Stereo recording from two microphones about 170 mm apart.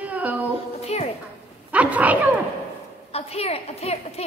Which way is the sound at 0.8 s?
40° left (ahead or behind).